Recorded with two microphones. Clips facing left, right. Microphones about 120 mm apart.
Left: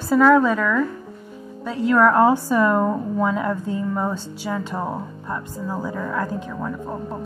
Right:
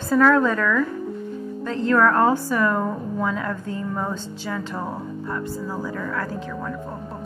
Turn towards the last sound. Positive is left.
turn(degrees=15)  # may be behind; listen again after turning